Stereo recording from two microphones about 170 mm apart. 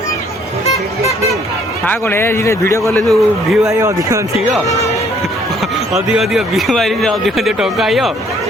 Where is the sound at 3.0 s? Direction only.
Centre (ahead or behind).